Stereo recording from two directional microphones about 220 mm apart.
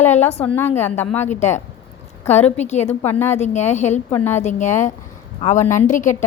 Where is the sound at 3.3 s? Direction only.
30° left (ahead or behind).